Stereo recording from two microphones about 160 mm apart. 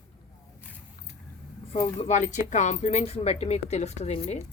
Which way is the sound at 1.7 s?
30° left (ahead or behind).